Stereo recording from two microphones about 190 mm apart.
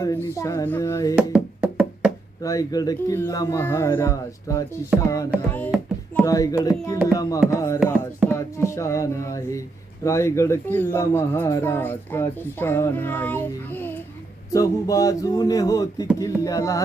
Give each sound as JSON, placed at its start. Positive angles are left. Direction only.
{"t": 0.0, "sound": "speech", "side_deg": 15}
{"t": 1.1, "sound": "music", "side_deg": -5}
{"t": 2.4, "sound": "speech", "side_deg": 20}
{"t": 5.5, "sound": "music", "side_deg": 5}
{"t": 6.2, "sound": "speech", "side_deg": 20}